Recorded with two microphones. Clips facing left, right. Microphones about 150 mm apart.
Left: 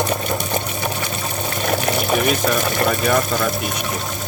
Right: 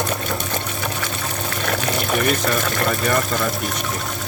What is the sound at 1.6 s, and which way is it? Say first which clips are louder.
Water: left 3 dB; 20° left (ahead or behind).